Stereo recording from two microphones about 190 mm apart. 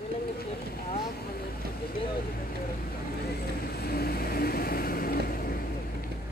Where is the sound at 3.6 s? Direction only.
55° left (ahead or behind).